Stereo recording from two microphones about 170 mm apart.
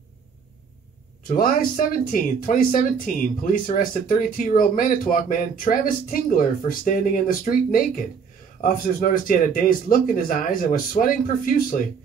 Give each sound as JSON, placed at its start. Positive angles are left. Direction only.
{"t": 1.3, "sound": "speech", "side_deg": 55}